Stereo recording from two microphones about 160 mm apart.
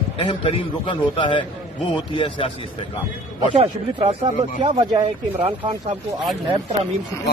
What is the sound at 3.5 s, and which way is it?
Speech, 30° right (ahead or behind).